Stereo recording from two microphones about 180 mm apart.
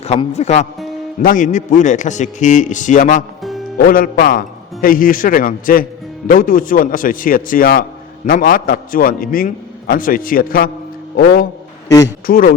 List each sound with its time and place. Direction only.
0.0 s a man's voice: 35° left (ahead or behind); by 10.7 s 55° left (ahead or behind)
12.2 s a man's voice: 50° left (ahead or behind)